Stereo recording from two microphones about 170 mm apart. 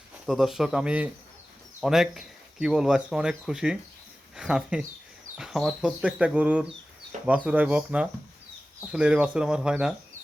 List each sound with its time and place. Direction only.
0.3 s speech: centre (ahead or behind)